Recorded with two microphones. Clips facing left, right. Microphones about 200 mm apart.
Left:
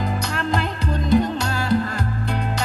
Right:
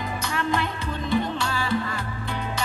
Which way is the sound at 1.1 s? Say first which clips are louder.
Left 6 dB; 40° left (ahead or behind).